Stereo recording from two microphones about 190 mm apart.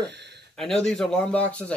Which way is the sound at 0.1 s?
65° right (ahead or behind).